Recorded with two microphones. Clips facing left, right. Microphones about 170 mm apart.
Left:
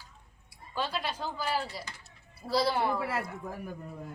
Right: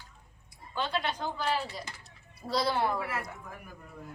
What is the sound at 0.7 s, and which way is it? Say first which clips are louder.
Speech: right 1 dB; 5° left (ahead or behind).